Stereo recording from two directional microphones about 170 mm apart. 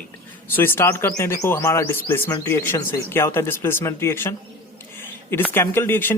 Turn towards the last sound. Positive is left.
turn(degrees=10)  # may be behind; listen again after turning